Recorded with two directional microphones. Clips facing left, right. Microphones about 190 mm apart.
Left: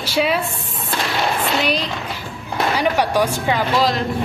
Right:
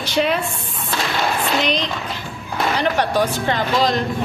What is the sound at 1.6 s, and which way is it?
Speech, 5° left (ahead or behind).